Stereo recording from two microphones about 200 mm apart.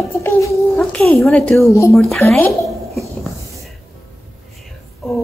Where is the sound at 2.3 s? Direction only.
5° left (ahead or behind).